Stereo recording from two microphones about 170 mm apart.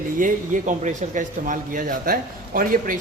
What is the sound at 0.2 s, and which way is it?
A woman's voice, 50° right (ahead or behind).